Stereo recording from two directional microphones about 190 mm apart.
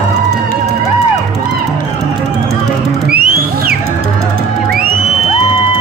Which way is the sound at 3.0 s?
55° right (ahead or behind).